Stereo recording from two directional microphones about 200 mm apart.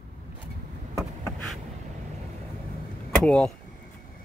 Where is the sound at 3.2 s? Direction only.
5° left (ahead or behind).